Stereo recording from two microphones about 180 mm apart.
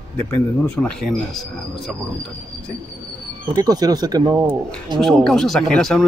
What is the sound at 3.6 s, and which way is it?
Speech, 20° right (ahead or behind).